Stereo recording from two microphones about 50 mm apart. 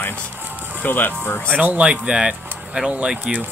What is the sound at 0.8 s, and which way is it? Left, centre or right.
Speech, left.